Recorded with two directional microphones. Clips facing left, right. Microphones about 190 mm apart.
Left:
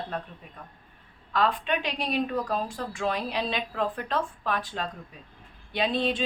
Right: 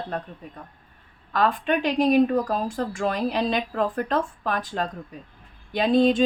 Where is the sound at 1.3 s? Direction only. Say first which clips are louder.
Right 4 dB; 45° right (ahead or behind).